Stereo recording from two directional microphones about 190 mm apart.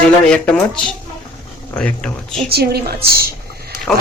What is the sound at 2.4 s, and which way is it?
Speech, 55° right (ahead or behind).